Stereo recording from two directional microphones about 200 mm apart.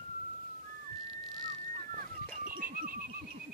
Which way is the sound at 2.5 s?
45° right (ahead or behind).